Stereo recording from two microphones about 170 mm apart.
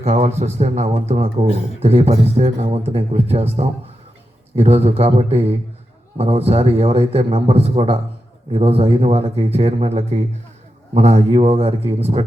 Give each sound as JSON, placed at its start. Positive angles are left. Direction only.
{"t": 0.0, "sound": "a man's voice", "side_deg": -40}